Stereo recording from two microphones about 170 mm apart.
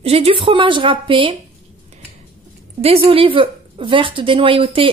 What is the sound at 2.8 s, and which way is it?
A woman's voice, 35° right (ahead or behind).